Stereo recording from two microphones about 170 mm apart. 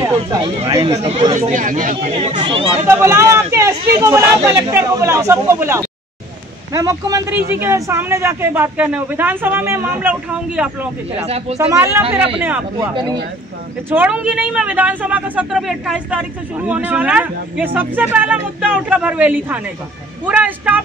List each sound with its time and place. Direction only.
0.0 s speech: 20° right (ahead or behind)
1.5 s speech: 50° right (ahead or behind)
2.1 s speech: 30° right (ahead or behind)
2.9 s speech: 15° right (ahead or behind)
11.1 s speech: 35° right (ahead or behind)
11.5 s speech: 15° right (ahead or behind)
13.8 s speech: 10° right (ahead or behind)